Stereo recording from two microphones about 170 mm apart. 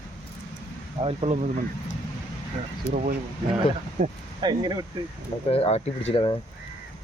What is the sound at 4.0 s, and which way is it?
Speech, 50° right (ahead or behind).